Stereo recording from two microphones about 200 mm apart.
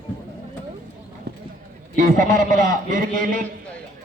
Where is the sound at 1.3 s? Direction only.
55° right (ahead or behind).